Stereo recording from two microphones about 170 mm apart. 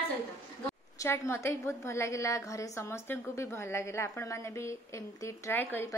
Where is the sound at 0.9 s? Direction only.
15° left (ahead or behind).